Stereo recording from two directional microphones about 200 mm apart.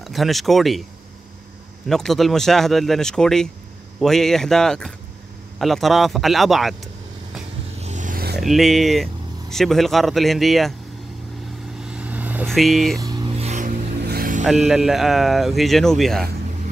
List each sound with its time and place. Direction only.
0.0 s speech: centre (ahead or behind)
1.9 s speech: centre (ahead or behind)
7.8 s a sound: 40° right (ahead or behind)
8.4 s speech: centre (ahead or behind)
11.8 s vehicle: 5° right (ahead or behind)
12.4 s speech: centre (ahead or behind)
13.0 s vehicle: 20° right (ahead or behind); by 13.7 s 35° right (ahead or behind)
14.0 s vehicle: 50° right (ahead or behind)
14.4 s speech: centre (ahead or behind)